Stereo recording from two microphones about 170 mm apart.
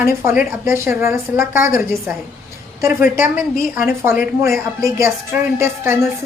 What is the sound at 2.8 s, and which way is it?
A woman's voice, 15° right (ahead or behind).